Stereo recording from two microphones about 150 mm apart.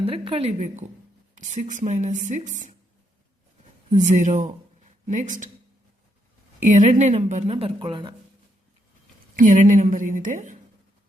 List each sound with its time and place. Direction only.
0.0 s a woman's voice: 40° right (ahead or behind)
3.9 s a woman's voice: 55° right (ahead or behind)
6.6 s speech: 55° right (ahead or behind); by 8.1 s 35° right (ahead or behind)
9.3 s a woman's voice: 60° right (ahead or behind)